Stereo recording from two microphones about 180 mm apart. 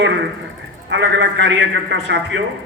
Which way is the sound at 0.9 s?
85° right.